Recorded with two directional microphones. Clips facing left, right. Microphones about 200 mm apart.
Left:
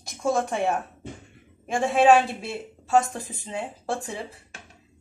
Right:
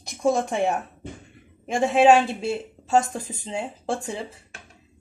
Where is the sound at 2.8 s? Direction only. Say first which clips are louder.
Even; 25° right (ahead or behind).